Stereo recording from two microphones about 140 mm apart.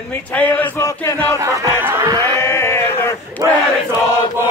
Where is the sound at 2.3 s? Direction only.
20° left (ahead or behind).